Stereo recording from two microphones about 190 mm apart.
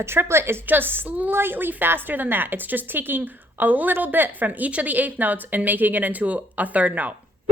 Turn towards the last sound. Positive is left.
turn(degrees=-10)  # may be behind; listen again after turning